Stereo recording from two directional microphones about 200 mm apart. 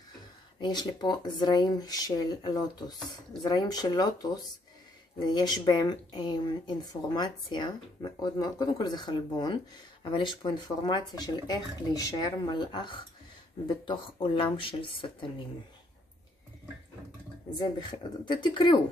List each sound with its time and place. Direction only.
0.6 s speech: 20° left (ahead or behind)
17.6 s speech: 20° left (ahead or behind)